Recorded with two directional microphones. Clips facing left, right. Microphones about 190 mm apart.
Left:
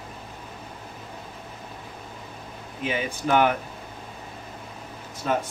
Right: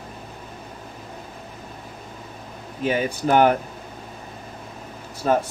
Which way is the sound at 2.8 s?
40° right (ahead or behind).